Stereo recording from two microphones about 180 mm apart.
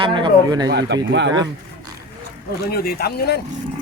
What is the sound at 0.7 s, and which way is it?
Speech, 75° right (ahead or behind).